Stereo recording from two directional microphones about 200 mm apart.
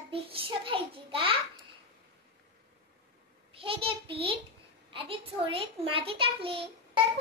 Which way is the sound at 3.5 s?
25° right (ahead or behind).